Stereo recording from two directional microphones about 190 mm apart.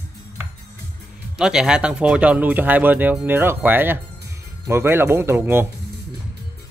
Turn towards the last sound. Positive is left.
turn(degrees=-10)  # may be behind; listen again after turning